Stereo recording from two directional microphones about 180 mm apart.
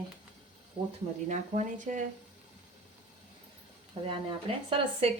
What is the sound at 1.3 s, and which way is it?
Speech, 40° right (ahead or behind).